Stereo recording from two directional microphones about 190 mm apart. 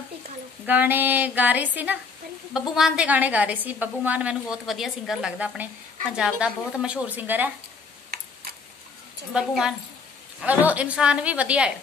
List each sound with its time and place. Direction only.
0.7 s a woman's voice: 10° right (ahead or behind)
8.1 s tick-tock: 55° right (ahead or behind)
9.3 s a woman's voice: 5° right (ahead or behind)